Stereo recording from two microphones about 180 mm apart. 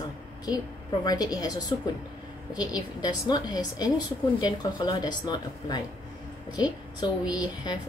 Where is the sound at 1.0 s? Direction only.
20° left (ahead or behind).